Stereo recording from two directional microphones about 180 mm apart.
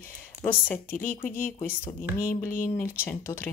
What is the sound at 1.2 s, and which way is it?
Speech, 50° left (ahead or behind).